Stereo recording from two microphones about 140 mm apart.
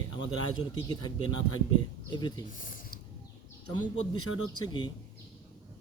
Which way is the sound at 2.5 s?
70° left (ahead or behind).